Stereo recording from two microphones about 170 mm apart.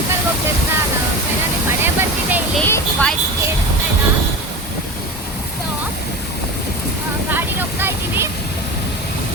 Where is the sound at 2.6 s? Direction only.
10° left (ahead or behind).